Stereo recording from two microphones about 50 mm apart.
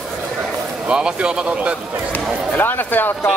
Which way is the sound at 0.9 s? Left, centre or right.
Centre.